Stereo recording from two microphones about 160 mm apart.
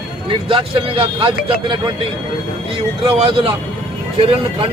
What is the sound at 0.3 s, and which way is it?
Speech, 35° right (ahead or behind).